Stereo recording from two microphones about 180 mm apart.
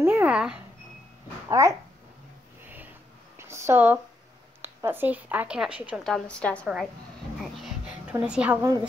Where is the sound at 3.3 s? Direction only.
15° right (ahead or behind).